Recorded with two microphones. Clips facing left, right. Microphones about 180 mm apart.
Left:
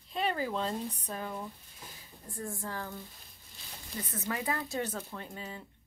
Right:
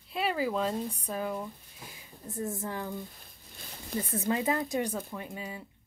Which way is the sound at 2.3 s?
20° right (ahead or behind).